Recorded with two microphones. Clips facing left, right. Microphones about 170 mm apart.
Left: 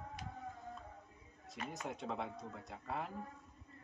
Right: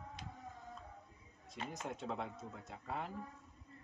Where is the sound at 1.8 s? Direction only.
Centre (ahead or behind).